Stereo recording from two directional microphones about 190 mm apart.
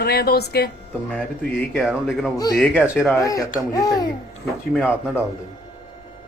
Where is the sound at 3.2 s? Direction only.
15° left (ahead or behind).